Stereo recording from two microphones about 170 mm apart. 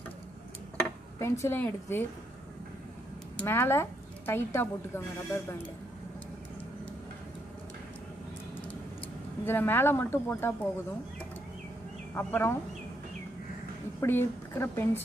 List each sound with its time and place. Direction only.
1.2 s a woman's voice: 15° left (ahead or behind)
3.3 s a woman's voice: 15° left (ahead or behind)
9.4 s a woman's voice: 10° left (ahead or behind)
12.2 s a woman's voice: 10° left (ahead or behind)
14.0 s a woman's voice: 15° left (ahead or behind)